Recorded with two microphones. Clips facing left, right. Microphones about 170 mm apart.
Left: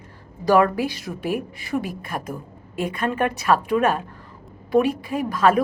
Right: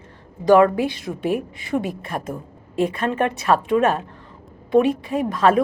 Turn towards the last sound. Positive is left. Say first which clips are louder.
# right 1 dB
turn(degrees=-25)  # may be behind; listen again after turning